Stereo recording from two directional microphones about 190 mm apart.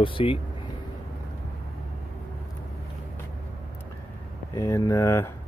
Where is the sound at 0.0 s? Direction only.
25° left (ahead or behind).